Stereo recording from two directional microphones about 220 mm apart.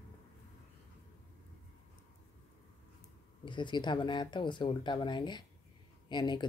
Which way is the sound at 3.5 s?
20° left (ahead or behind).